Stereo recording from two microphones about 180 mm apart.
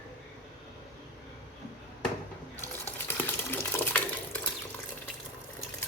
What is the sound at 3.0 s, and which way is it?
Stir, 10° left (ahead or behind).